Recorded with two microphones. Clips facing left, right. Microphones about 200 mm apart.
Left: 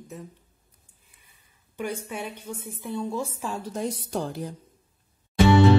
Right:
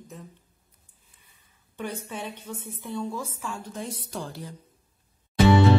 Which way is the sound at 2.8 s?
25° left (ahead or behind).